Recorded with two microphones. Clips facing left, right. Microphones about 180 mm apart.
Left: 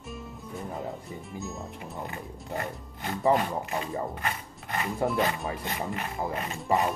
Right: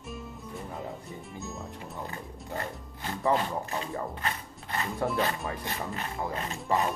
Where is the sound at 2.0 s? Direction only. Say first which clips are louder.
Left 1 dB; 15° left (ahead or behind); by 5.5 s centre (ahead or behind).